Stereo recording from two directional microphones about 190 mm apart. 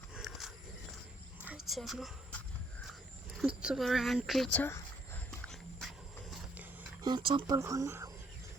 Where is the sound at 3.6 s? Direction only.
Centre (ahead or behind).